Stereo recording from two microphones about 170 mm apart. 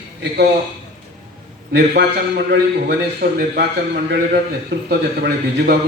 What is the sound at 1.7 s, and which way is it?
A man's voice, 85° right.